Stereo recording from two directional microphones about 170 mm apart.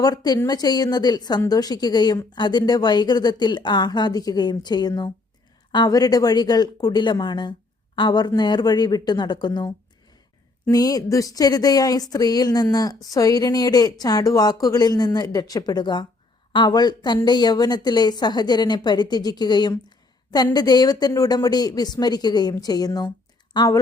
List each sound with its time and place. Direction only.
0.0 s speech: 25° left (ahead or behind)